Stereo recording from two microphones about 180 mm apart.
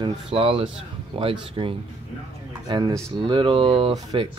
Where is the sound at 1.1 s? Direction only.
25° right (ahead or behind).